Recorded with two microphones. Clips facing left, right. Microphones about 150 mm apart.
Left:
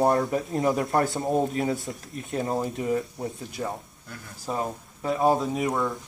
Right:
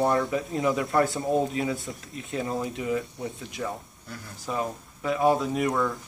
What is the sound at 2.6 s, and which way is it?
Speech, 40° left (ahead or behind).